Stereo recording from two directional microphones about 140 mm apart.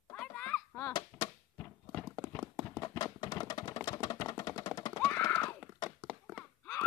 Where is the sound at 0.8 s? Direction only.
30° left (ahead or behind).